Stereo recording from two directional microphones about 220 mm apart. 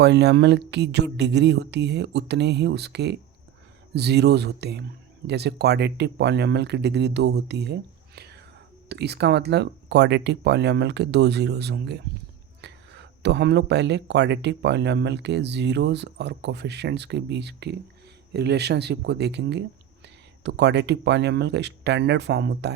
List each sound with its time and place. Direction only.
0.0 s speech: 50° right (ahead or behind)